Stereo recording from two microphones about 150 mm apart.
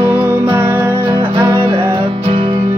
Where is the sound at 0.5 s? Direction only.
15° right (ahead or behind).